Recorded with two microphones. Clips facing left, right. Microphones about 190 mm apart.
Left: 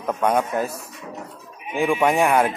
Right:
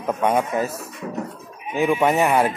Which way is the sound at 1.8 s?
5° right (ahead or behind).